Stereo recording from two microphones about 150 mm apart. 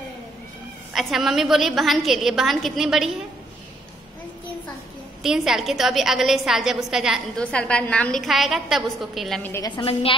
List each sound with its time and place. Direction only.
0.9 s a woman's voice: centre (ahead or behind)
5.2 s a woman's voice: 5° right (ahead or behind)
9.4 s a woman's voice: 15° left (ahead or behind)
9.7 s a woman's voice: 35° left (ahead or behind)